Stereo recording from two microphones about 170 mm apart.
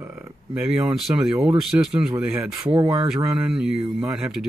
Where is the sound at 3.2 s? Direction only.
10° right (ahead or behind).